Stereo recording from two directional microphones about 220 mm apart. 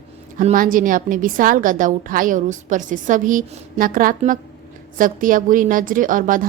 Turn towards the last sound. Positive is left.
turn(degrees=-40)  # may be behind; listen again after turning